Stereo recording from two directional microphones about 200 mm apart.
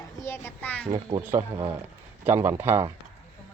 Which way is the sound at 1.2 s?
10° right (ahead or behind).